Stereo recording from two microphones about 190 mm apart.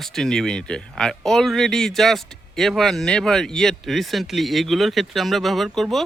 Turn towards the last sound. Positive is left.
turn(degrees=0)  # may be behind; listen again after turning